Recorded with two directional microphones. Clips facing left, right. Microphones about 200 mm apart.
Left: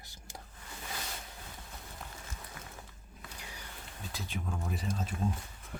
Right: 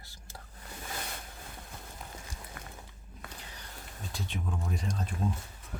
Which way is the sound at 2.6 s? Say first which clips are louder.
Right 2 dB; 55° right (ahead or behind).